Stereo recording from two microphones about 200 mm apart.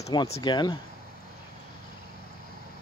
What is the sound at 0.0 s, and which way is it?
Speech, 25° left (ahead or behind).